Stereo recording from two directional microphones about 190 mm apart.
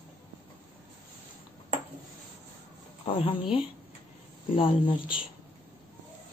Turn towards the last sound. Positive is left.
turn(degrees=25)  # may be behind; listen again after turning